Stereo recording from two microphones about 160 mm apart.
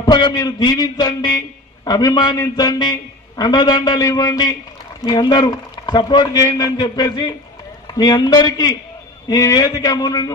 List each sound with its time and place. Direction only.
0.0 s a man's voice: 25° left (ahead or behind)